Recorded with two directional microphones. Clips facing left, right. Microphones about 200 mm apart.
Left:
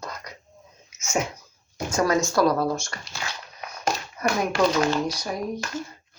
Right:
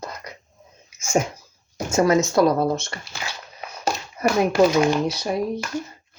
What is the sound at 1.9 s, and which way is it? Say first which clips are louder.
Speech: right 4 dB; 25° right (ahead or behind).